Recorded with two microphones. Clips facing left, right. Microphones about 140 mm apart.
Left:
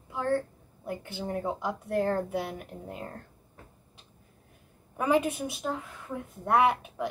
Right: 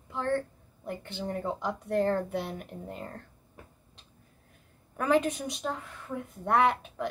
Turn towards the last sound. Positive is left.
turn(degrees=10)  # may be behind; listen again after turning